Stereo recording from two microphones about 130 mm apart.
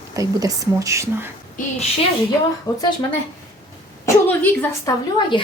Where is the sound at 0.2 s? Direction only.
25° right (ahead or behind).